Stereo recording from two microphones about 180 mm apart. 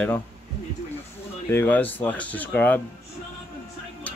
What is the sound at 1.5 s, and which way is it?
Speech, 10° left (ahead or behind).